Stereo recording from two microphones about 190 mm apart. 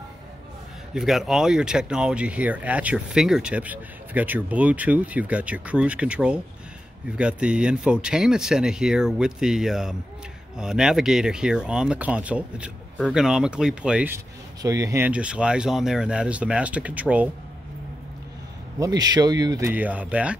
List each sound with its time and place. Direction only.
0.9 s speech: centre (ahead or behind)
18.8 s speech: 20° right (ahead or behind)
19.7 s speech: 10° right (ahead or behind)